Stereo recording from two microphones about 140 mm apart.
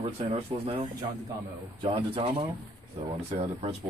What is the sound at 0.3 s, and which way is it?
A man's voice, 45° right (ahead or behind).